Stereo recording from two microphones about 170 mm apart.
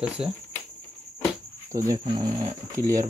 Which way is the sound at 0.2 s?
35° right (ahead or behind).